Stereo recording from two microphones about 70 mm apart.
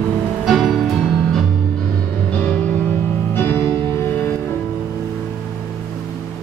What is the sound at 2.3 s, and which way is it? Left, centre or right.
Music, left.